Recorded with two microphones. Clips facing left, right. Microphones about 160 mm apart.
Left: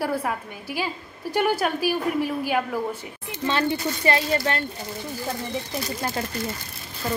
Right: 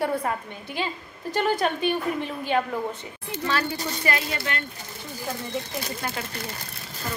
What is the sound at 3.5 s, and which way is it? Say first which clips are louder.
Speech: left 4 dB; 25° left (ahead or behind).